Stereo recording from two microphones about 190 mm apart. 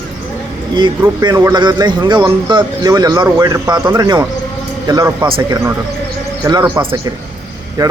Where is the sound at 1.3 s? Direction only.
15° right (ahead or behind).